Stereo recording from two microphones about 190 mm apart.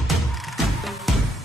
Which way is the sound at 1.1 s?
Centre (ahead or behind).